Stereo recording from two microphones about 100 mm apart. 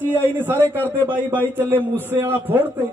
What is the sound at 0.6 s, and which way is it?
Speech, 20° left (ahead or behind).